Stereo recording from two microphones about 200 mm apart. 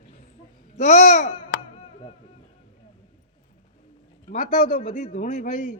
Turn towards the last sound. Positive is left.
turn(degrees=35)  # may be behind; listen again after turning